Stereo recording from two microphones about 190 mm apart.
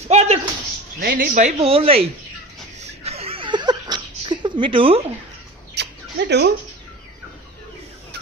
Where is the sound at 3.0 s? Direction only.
30° right (ahead or behind).